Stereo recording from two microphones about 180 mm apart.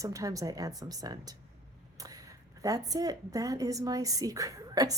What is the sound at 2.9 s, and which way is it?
Speech, 20° right (ahead or behind).